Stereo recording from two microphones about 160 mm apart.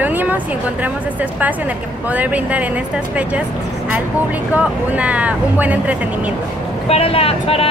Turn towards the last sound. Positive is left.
turn(degrees=35)  # may be behind; listen again after turning